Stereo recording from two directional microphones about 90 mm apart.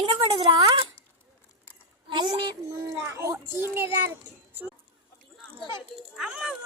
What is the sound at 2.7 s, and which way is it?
A woman's voice, 30° right (ahead or behind).